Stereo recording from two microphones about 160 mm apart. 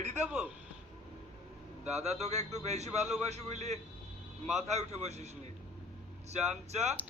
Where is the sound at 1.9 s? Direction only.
45° right (ahead or behind).